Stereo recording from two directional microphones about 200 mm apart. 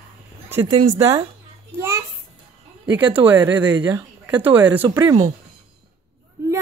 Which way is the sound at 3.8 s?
20° right (ahead or behind).